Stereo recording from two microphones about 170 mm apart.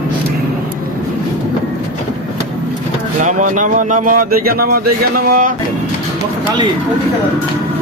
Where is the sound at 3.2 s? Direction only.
50° right (ahead or behind).